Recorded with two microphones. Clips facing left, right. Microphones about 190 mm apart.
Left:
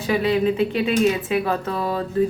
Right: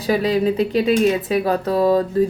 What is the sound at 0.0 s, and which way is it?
Speech, 35° right (ahead or behind).